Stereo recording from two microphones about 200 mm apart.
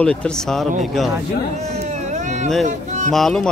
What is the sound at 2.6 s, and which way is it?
Speech, 35° right (ahead or behind).